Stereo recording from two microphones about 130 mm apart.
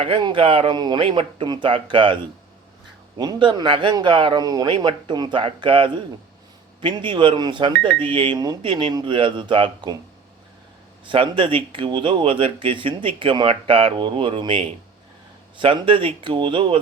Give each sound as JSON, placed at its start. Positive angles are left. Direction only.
{"t": 0.0, "sound": "speech", "side_deg": -40}
{"t": 3.2, "sound": "speech", "side_deg": -35}
{"t": 11.0, "sound": "speech", "side_deg": -40}